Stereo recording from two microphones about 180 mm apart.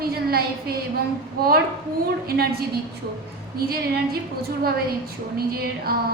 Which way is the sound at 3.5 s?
55° right (ahead or behind).